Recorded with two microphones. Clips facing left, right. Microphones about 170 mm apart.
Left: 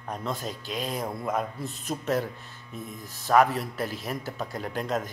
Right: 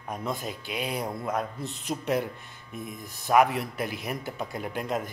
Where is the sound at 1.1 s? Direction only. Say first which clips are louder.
Left 1 dB; centre (ahead or behind).